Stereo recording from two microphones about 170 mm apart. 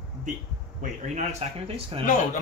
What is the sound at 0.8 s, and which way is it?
Speech, 40° right (ahead or behind).